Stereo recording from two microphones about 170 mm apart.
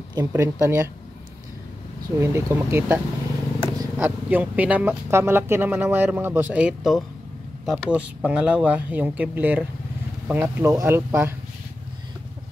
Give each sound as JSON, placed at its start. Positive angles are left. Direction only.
{"t": 0.1, "sound": "speech", "side_deg": -15}
{"t": 2.1, "sound": "speech", "side_deg": -15}